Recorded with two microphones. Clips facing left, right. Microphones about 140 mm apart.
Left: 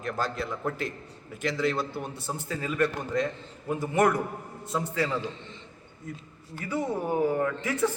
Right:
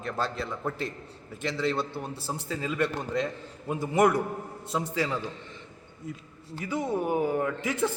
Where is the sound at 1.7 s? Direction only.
30° right (ahead or behind).